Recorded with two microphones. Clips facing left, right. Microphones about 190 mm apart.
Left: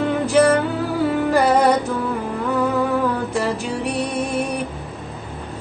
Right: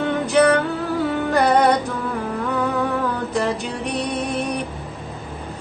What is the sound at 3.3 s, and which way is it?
Music, 5° left (ahead or behind).